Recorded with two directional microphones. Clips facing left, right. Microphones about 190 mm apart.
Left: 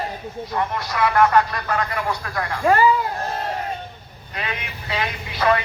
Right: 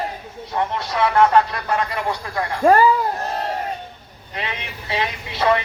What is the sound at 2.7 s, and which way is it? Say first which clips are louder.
Speech: right 3 dB; 45° right (ahead or behind).